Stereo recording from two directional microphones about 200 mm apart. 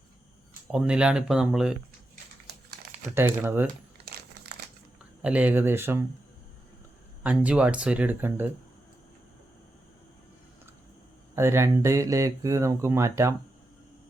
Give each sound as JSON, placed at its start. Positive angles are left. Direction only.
{"t": 0.7, "sound": "speech", "side_deg": -5}
{"t": 2.5, "sound": "crumpling", "side_deg": -55}
{"t": 3.2, "sound": "speech", "side_deg": -10}
{"t": 4.5, "sound": "crumpling", "side_deg": -55}
{"t": 5.2, "sound": "speech", "side_deg": -5}
{"t": 7.2, "sound": "speech", "side_deg": -5}
{"t": 11.3, "sound": "speech", "side_deg": -10}